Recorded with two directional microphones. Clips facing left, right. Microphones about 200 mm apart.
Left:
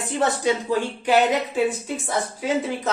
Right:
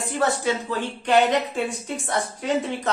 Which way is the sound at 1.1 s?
Centre (ahead or behind).